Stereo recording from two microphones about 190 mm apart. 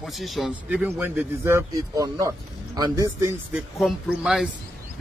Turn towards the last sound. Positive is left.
turn(degrees=0)  # may be behind; listen again after turning